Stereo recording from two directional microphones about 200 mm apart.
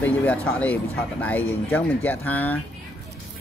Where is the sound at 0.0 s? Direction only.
10° left (ahead or behind).